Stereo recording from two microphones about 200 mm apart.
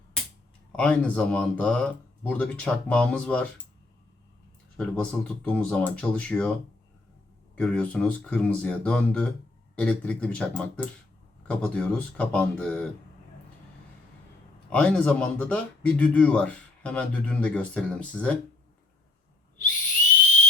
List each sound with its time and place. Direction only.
0.8 s speech: 5° left (ahead or behind)
4.8 s speech: 5° left (ahead or behind)
7.5 s a man's voice: 5° left (ahead or behind)
14.7 s a man's voice: 5° left (ahead or behind)